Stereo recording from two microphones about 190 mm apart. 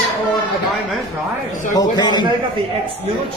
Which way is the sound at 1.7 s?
20° left (ahead or behind).